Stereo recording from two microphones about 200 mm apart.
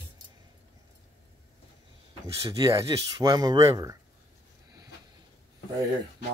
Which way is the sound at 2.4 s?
15° right (ahead or behind).